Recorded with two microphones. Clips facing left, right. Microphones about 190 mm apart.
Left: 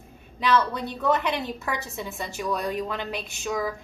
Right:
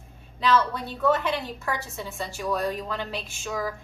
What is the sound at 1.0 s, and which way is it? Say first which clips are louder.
A woman's voice: right 1 dB; 15° left (ahead or behind).